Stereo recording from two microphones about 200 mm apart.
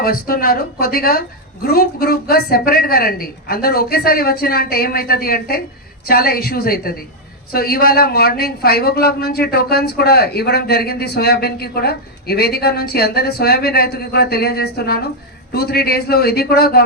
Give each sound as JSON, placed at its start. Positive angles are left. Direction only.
{"t": 0.0, "sound": "speech", "side_deg": 45}